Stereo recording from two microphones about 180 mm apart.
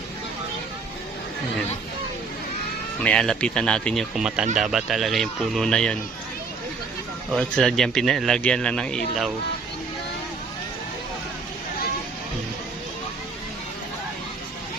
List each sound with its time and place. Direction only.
3.0 s a man's voice: 5° left (ahead or behind)
7.3 s a man's voice: centre (ahead or behind)